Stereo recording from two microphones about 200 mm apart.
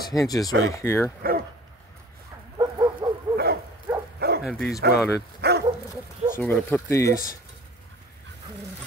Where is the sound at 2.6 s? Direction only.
20° right (ahead or behind).